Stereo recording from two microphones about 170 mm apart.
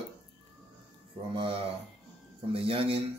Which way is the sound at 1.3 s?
30° right (ahead or behind).